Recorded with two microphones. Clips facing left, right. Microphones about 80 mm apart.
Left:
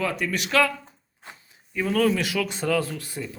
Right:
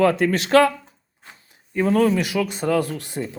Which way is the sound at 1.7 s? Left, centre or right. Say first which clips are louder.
Right 6 dB; right.